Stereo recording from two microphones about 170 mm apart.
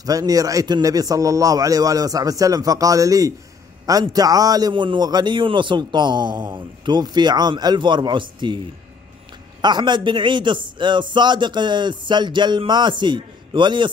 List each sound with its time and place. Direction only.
0.0 s a man's voice: 20° right (ahead or behind)
9.6 s a man's voice: 25° right (ahead or behind)